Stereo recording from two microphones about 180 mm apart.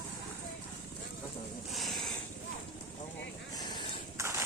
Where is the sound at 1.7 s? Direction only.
Centre (ahead or behind).